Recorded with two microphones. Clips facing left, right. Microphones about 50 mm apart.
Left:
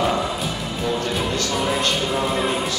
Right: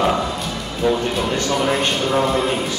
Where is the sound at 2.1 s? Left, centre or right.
Centre.